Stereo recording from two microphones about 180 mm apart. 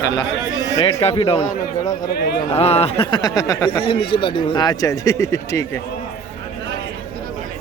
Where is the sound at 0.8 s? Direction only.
30° left (ahead or behind).